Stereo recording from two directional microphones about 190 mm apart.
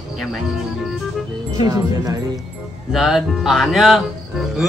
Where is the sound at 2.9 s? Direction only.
Centre (ahead or behind).